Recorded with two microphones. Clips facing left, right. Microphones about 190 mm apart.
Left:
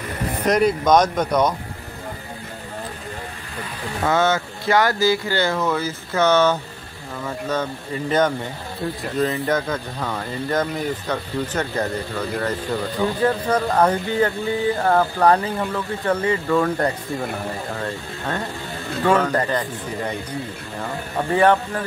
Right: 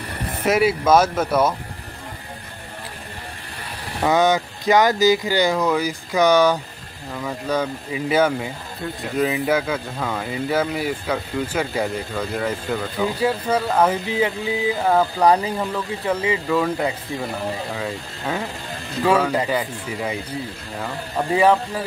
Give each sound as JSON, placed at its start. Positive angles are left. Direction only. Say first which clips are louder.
{"t": 0.5, "sound": "speech", "louder": "even", "side_deg": -5}
{"t": 4.0, "sound": "speech", "louder": "right 2 dB", "side_deg": -15}
{"t": 21.4, "sound": "speech", "louder": "even", "side_deg": -5}